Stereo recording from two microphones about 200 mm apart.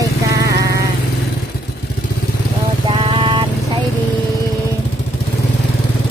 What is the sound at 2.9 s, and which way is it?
Vehicle, 25° right (ahead or behind).